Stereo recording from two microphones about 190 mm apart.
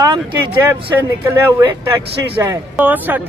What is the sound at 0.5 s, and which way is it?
Speech, 10° right (ahead or behind).